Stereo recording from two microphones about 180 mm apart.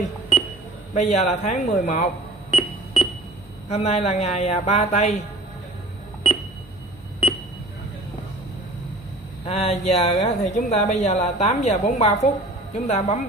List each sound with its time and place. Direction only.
0.9 s speech: 40° left (ahead or behind)
2.5 s beep: 35° left (ahead or behind)
3.6 s speech: 35° left (ahead or behind)
9.5 s speech: 35° left (ahead or behind)